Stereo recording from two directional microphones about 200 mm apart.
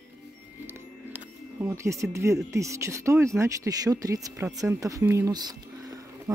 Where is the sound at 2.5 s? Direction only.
15° right (ahead or behind).